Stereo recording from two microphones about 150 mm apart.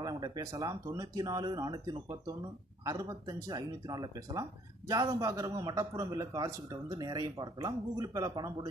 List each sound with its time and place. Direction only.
0.0 s speech: 25° right (ahead or behind)